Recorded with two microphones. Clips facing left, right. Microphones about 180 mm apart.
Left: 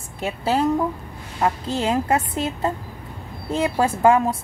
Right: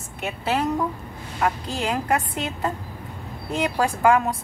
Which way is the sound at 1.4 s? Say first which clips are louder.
Left 3 dB; 25° left (ahead or behind).